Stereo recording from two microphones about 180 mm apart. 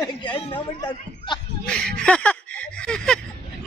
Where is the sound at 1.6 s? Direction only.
5° left (ahead or behind).